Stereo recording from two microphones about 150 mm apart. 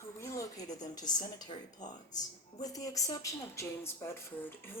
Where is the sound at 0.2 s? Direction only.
20° left (ahead or behind).